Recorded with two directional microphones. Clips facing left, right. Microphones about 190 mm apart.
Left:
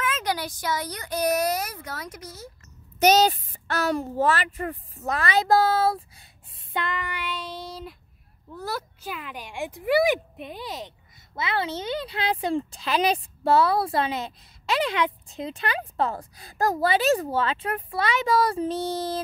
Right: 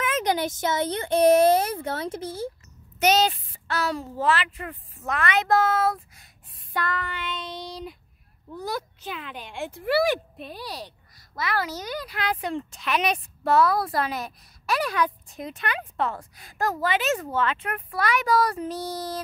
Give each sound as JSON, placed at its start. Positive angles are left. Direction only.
{"t": 0.0, "sound": "speech", "side_deg": -20}
{"t": 3.0, "sound": "speech", "side_deg": 40}
{"t": 6.7, "sound": "speech", "side_deg": 20}